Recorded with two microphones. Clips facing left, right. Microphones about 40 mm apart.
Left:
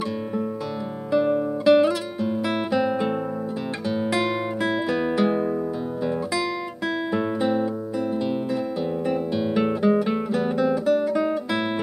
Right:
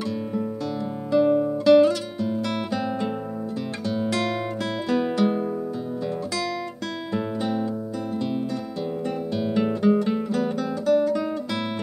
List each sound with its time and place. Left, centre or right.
1.1 s music: centre
4.0 s guitar: centre
4.8 s music: centre
7.2 s music: centre
9.4 s guitar: centre